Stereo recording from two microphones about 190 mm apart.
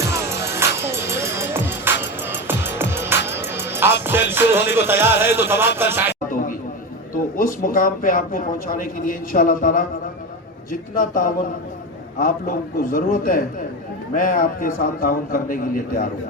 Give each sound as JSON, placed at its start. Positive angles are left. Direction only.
{"t": 0.0, "sound": "music", "side_deg": -15}
{"t": 6.1, "sound": "a sound", "side_deg": 45}
{"t": 7.3, "sound": "a man's voice", "side_deg": 45}